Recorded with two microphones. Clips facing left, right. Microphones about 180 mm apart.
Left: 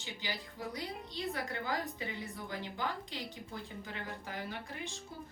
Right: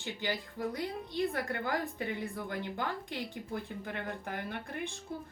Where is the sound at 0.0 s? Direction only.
55° right (ahead or behind).